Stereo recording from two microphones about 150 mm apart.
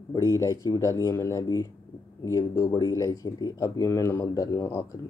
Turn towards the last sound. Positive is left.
turn(degrees=15)  # may be behind; listen again after turning